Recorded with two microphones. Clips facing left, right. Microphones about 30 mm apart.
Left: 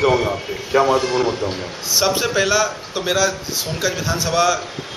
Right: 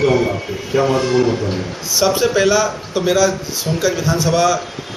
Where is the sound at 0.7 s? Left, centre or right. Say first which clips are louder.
Even; left.